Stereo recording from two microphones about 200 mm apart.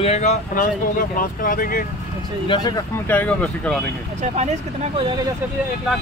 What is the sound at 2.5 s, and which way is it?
Speech, 20° left (ahead or behind).